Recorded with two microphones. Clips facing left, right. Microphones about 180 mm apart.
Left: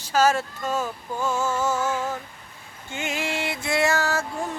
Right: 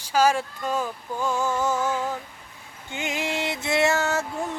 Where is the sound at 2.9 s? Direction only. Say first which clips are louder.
Even; 15° right (ahead or behind).